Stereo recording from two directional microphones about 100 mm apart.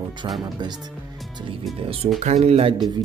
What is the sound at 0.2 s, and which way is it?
Speech, 50° right (ahead or behind).